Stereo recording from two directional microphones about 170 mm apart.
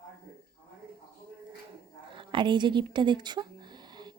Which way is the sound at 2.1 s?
30° right (ahead or behind).